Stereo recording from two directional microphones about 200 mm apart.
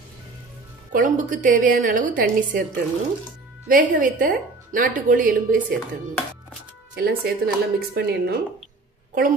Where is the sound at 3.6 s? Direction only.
45° right (ahead or behind).